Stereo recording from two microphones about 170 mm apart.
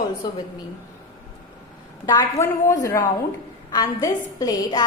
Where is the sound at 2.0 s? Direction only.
20° left (ahead or behind).